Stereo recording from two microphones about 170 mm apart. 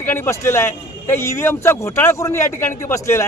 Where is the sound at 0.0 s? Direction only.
15° left (ahead or behind).